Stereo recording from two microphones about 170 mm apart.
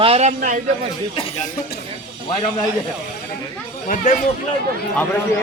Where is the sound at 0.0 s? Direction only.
40° right (ahead or behind).